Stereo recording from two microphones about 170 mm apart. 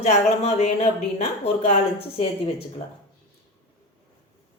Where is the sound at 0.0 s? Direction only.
40° left (ahead or behind).